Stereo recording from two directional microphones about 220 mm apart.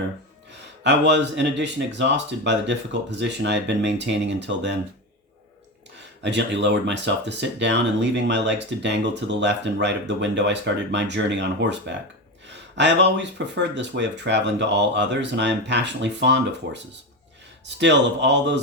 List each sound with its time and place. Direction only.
0.9 s speech: 50° right (ahead or behind)
6.0 s speech: 55° right (ahead or behind)